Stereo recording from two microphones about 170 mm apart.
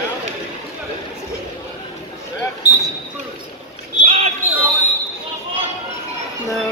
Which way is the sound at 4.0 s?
40° right (ahead or behind).